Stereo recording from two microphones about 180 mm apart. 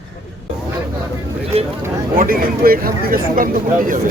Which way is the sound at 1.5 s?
35° right (ahead or behind).